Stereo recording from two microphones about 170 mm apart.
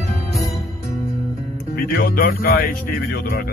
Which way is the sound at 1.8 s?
60° left (ahead or behind).